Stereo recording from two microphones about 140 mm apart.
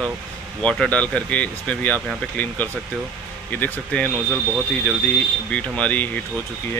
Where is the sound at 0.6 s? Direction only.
10° left (ahead or behind).